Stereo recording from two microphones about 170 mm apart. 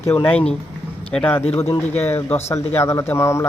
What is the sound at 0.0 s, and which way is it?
Speech, 15° left (ahead or behind).